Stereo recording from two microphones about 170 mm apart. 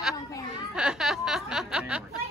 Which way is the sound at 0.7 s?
5° right (ahead or behind).